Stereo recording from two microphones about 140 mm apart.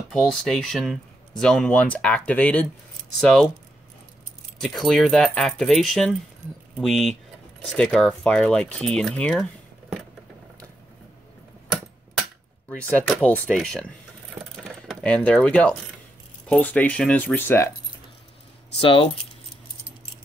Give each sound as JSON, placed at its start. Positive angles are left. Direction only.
{"t": 0.1, "sound": "speech", "side_deg": 5}
{"t": 4.6, "sound": "speech", "side_deg": 0}
{"t": 13.2, "sound": "speech", "side_deg": 10}
{"t": 18.8, "sound": "speech", "side_deg": 40}